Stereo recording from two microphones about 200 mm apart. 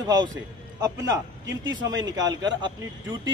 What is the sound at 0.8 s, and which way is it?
A man's voice, 15° right (ahead or behind).